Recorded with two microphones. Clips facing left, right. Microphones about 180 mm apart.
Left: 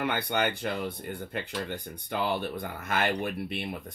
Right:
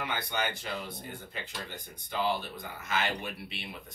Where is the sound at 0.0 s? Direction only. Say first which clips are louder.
Left 6 dB; 60° left (ahead or behind).